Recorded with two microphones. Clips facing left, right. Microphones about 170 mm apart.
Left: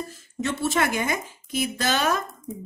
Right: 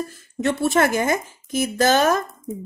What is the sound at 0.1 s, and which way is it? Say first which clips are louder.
Speech: right 6 dB; 60° right (ahead or behind).